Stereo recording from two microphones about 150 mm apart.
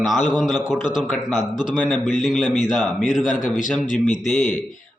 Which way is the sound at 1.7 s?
10° left (ahead or behind).